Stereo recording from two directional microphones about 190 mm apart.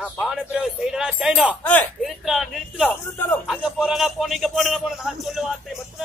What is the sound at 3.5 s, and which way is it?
Music, 5° right (ahead or behind).